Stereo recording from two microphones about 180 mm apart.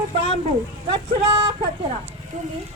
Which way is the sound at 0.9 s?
25° right (ahead or behind).